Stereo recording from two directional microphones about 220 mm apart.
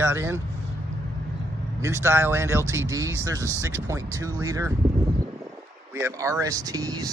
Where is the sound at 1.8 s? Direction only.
10° right (ahead or behind).